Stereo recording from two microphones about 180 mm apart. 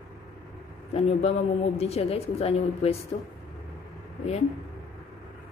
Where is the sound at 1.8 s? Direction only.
35° left (ahead or behind).